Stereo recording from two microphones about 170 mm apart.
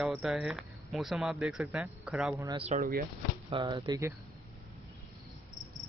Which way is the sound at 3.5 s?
25° right (ahead or behind).